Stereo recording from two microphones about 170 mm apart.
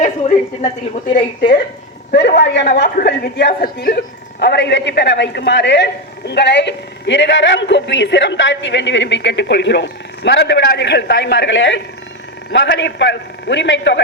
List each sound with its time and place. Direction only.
0.0 s a sound: 40° left (ahead or behind)
2.1 s a man's voice: 80° left; by 3.9 s 60° left (ahead or behind)
4.4 s a man's voice: 85° left